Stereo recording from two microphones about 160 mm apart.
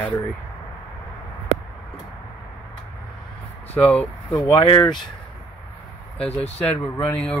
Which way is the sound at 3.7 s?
10° left (ahead or behind).